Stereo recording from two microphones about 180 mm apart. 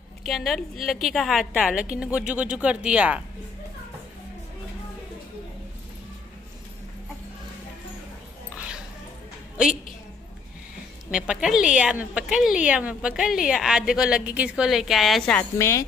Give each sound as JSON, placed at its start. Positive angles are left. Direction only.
{"t": 0.2, "sound": "a woman's voice", "side_deg": 0}
{"t": 11.1, "sound": "a woman's voice", "side_deg": -5}
{"t": 15.5, "sound": "speech", "side_deg": 15}